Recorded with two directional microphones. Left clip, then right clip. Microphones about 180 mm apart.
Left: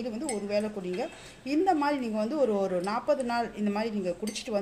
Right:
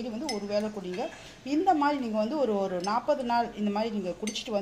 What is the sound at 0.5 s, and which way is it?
Speech, 20° left (ahead or behind).